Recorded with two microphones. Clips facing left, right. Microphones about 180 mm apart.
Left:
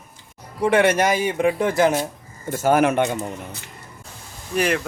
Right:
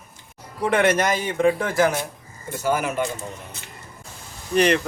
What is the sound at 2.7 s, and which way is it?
Speech, 65° left (ahead or behind).